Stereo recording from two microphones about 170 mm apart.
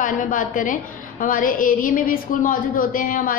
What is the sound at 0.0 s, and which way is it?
A woman's voice, 50° left (ahead or behind).